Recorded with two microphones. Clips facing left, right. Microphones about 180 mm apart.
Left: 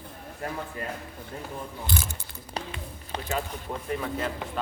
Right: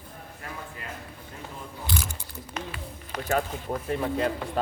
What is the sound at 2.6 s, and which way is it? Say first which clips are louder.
Speech: left 1 dB; 35° left (ahead or behind).